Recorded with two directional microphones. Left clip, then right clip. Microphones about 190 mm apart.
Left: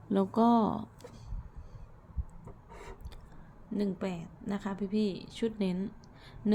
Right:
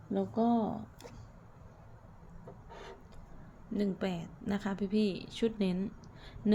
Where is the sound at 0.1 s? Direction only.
35° left (ahead or behind).